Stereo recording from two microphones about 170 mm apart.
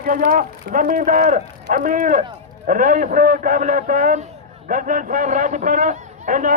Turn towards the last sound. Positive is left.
turn(degrees=-50)  # may be behind; listen again after turning